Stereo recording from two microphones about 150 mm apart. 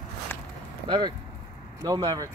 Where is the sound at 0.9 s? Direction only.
30° right (ahead or behind).